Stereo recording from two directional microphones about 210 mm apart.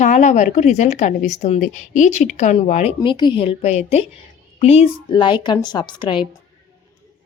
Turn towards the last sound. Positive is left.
turn(degrees=20)  # may be behind; listen again after turning